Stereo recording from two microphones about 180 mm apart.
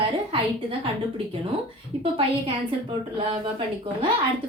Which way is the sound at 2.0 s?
30° right (ahead or behind).